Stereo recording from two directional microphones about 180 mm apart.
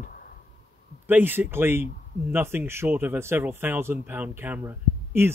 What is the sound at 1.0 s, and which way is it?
Speech, 10° right (ahead or behind).